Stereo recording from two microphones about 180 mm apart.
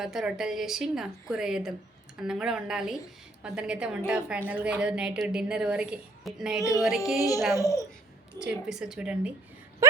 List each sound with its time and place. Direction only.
0.0 s a woman's voice: centre (ahead or behind)
7.2 s a child's voice: 20° left (ahead or behind)
8.4 s a woman's voice: 5° right (ahead or behind)